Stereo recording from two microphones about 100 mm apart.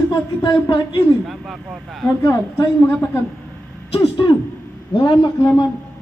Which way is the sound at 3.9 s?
75° left (ahead or behind).